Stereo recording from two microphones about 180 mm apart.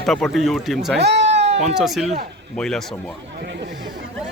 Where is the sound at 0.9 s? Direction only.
75° right (ahead or behind).